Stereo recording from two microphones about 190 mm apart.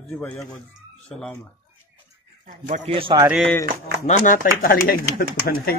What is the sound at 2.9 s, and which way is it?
Speech, 30° right (ahead or behind).